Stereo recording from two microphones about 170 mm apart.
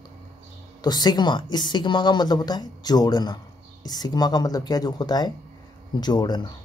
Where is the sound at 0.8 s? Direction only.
25° left (ahead or behind).